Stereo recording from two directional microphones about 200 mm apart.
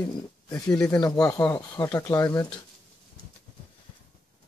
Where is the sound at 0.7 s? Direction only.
5° left (ahead or behind).